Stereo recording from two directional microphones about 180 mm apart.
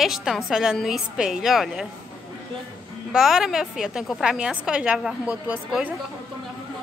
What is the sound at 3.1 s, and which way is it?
A woman's voice, centre (ahead or behind).